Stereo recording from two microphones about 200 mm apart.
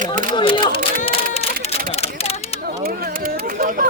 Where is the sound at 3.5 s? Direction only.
45° right (ahead or behind).